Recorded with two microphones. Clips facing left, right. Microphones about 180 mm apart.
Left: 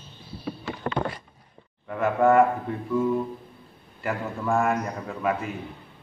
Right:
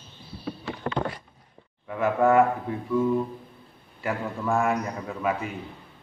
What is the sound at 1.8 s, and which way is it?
A man's voice, centre (ahead or behind).